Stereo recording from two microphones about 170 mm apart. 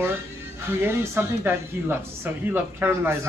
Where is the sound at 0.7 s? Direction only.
15° right (ahead or behind).